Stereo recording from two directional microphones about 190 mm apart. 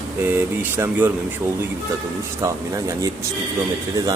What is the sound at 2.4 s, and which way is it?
Speech, 15° right (ahead or behind).